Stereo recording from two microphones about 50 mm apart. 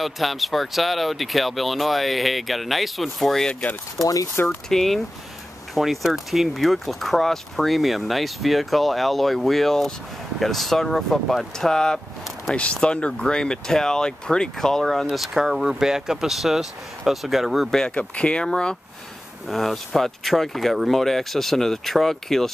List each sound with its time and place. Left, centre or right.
0.0 s speech: centre
4.6 s speech: centre
12.5 s speech: left
15.1 s speech: centre
17.6 s speech: centre
17.9 s speech: left
19.4 s speech: centre